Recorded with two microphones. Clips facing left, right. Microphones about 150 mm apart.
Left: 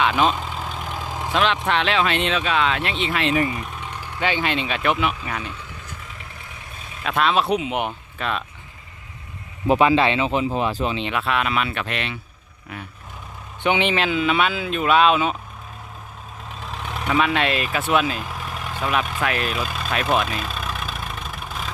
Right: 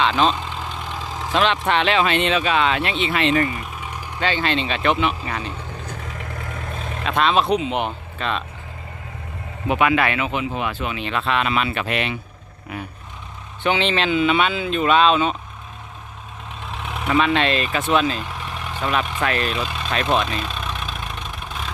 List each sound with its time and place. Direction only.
0.0 s vehicle: 10° left (ahead or behind)
1.6 s speech: centre (ahead or behind)
3.8 s vehicle: 10° right (ahead or behind)
4.2 s speech: 15° left (ahead or behind)
5.4 s speech: 40° right (ahead or behind)
5.8 s vehicle: 55° right (ahead or behind)
7.0 s speech: 5° left (ahead or behind)
9.6 s speech: 30° left (ahead or behind)
11.1 s speech: 5° left (ahead or behind)
13.6 s speech: 15° left (ahead or behind)
16.6 s vehicle: centre (ahead or behind)